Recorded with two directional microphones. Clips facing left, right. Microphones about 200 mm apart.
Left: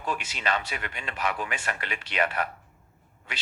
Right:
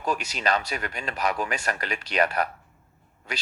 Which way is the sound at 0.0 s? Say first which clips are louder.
Right 4 dB; 40° right (ahead or behind).